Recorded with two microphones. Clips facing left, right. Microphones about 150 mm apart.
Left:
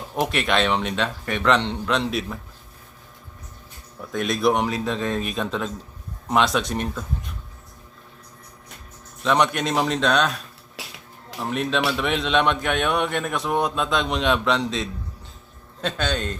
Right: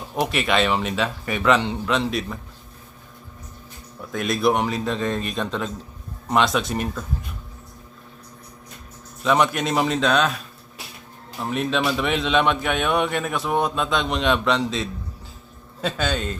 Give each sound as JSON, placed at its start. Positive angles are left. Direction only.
{"t": 0.1, "sound": "a man's voice", "side_deg": 0}
{"t": 4.1, "sound": "a man's voice", "side_deg": 0}
{"t": 9.2, "sound": "a man's voice", "side_deg": 0}